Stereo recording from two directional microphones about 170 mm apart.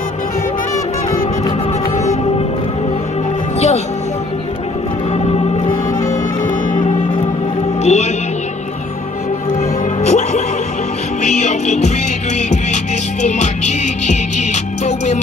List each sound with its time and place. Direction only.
3.5 s music: 40° left (ahead or behind)
5.1 s music: 35° left (ahead or behind)
7.8 s music: 45° left (ahead or behind)
10.0 s music: 40° left (ahead or behind)